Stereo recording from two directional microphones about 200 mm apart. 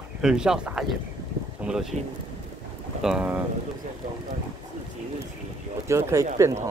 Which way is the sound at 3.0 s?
5° right (ahead or behind).